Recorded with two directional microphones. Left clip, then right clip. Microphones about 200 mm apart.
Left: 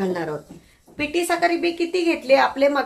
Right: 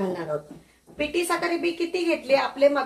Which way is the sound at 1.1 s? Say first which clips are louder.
Left 6 dB; 55° left (ahead or behind).